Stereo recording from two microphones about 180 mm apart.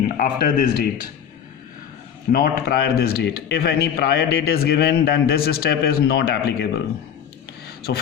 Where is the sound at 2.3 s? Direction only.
60° left (ahead or behind).